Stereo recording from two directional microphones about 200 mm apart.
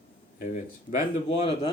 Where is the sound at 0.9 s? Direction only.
35° left (ahead or behind).